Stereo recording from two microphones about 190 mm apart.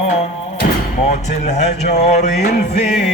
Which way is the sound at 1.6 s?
35° left (ahead or behind).